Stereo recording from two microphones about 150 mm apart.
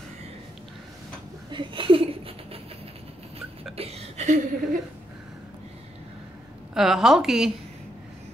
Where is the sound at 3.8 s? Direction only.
45° right (ahead or behind).